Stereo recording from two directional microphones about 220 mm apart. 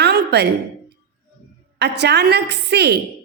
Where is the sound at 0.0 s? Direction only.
50° right (ahead or behind).